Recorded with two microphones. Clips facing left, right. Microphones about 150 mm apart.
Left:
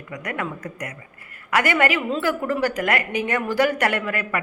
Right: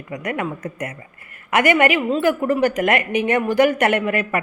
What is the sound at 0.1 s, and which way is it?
Speech, 20° right (ahead or behind).